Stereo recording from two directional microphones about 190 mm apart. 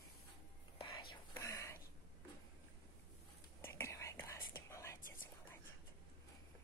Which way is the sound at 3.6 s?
15° left (ahead or behind).